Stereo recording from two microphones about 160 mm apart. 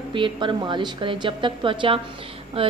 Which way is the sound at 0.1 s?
30° right (ahead or behind).